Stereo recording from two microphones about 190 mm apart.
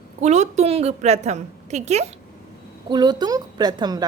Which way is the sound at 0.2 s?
35° right (ahead or behind).